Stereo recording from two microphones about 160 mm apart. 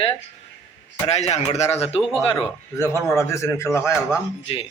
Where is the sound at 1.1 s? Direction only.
40° left (ahead or behind).